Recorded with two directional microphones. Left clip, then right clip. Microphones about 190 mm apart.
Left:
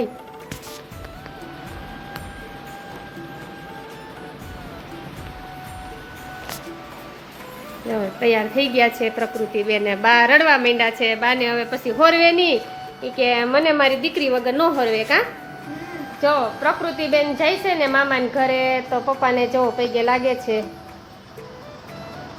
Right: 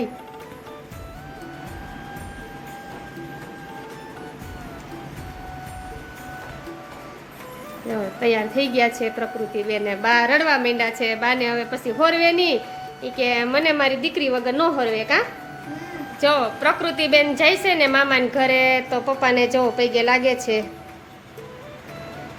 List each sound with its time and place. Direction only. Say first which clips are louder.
7.9 s a woman's voice: left 2 dB; centre (ahead or behind)
16.2 s a woman's voice: even; 15° right (ahead or behind)